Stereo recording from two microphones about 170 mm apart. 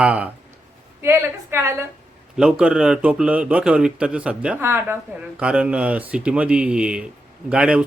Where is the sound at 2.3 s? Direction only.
5° right (ahead or behind).